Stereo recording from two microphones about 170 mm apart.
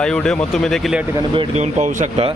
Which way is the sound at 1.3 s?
40° right (ahead or behind).